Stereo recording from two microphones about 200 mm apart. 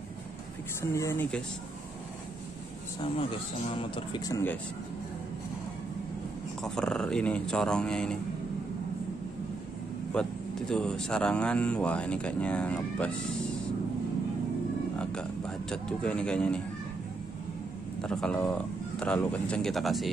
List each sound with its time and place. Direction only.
0.9 s speech: 10° left (ahead or behind)
3.0 s speech: 25° left (ahead or behind)
6.6 s speech: 5° left (ahead or behind)
10.1 s speech: 5° left (ahead or behind)
15.0 s speech: 5° left (ahead or behind)
18.0 s speech: 5° left (ahead or behind)